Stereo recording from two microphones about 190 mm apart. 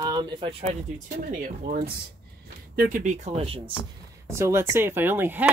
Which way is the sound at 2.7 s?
45° right (ahead or behind).